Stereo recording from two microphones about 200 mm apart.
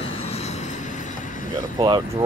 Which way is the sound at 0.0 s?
30° left (ahead or behind).